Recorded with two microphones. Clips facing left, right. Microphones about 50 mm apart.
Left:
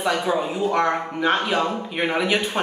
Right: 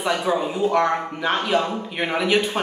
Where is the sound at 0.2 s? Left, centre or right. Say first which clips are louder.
Right 1 dB; centre.